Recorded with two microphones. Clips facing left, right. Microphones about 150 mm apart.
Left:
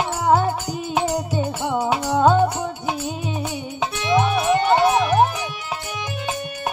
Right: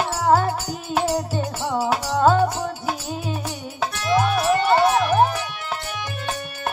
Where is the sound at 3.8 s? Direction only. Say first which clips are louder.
Left 1 dB; centre (ahead or behind).